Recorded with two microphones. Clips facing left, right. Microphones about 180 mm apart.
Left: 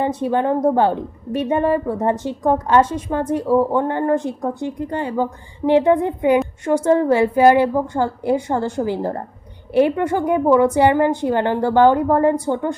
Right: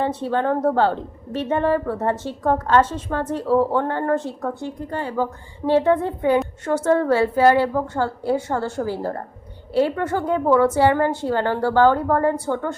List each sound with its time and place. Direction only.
0.0 s a woman's voice: 15° left (ahead or behind)